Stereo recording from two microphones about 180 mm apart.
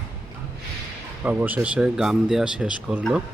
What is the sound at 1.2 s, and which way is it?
A man's voice, 10° right (ahead or behind).